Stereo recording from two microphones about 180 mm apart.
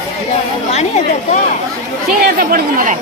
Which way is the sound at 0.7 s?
35° left (ahead or behind).